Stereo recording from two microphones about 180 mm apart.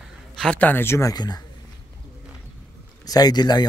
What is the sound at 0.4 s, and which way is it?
Speech, 5° left (ahead or behind).